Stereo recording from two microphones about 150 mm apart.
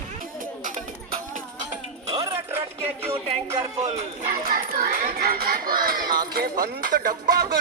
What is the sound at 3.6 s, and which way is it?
Music, 40° right (ahead or behind).